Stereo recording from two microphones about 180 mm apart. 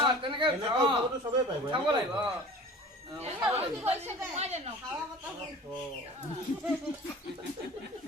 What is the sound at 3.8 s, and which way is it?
Speech, 35° right (ahead or behind).